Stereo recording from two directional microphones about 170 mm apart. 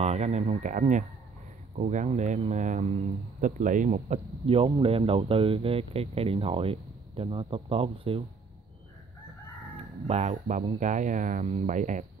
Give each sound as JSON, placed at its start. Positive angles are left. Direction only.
{"t": 0.0, "sound": "speech", "side_deg": -40}
{"t": 10.0, "sound": "speech", "side_deg": -40}